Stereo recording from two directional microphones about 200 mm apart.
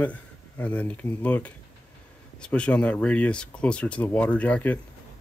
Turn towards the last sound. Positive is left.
turn(degrees=5)  # may be behind; listen again after turning